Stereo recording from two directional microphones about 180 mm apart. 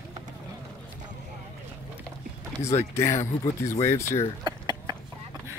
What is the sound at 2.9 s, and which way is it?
Speech, 15° left (ahead or behind).